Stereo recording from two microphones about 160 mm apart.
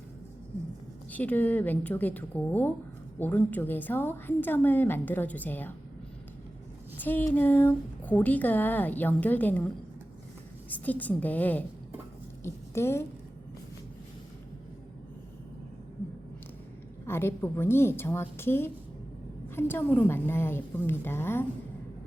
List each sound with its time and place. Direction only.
1.1 s speech: 10° left (ahead or behind)
6.9 s speech: 10° left (ahead or behind)
10.7 s a woman's voice: 10° left (ahead or behind)
17.1 s speech: 15° left (ahead or behind)